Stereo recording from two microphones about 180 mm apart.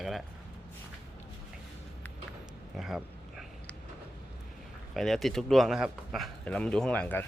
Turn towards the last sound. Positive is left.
turn(degrees=10)  # may be behind; listen again after turning